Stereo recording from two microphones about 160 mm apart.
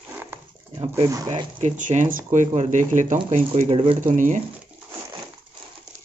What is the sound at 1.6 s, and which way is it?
Speech, 50° right (ahead or behind).